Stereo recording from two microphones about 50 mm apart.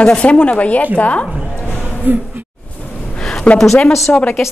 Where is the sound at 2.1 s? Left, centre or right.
Right.